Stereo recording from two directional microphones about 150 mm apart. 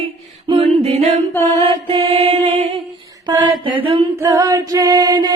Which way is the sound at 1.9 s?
40° right (ahead or behind).